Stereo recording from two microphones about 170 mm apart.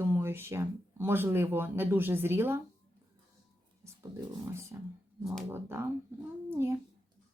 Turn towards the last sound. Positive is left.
turn(degrees=-15)  # may be behind; listen again after turning